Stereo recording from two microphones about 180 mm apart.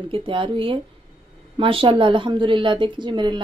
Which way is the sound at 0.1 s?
30° right (ahead or behind).